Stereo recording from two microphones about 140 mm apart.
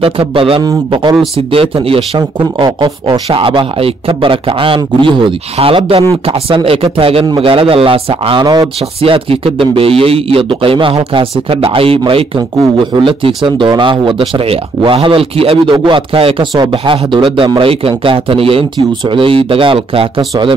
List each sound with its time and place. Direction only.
0.0 s a man's voice: 40° right (ahead or behind)